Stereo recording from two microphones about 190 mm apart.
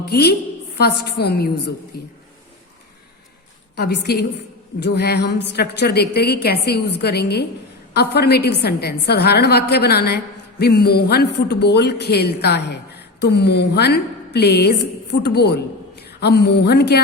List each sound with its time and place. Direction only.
0.1 s a man's voice: 55° left (ahead or behind)
3.8 s a man's voice: 60° left (ahead or behind)